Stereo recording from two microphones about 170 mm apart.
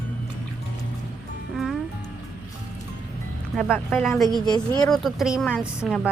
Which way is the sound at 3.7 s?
Centre (ahead or behind).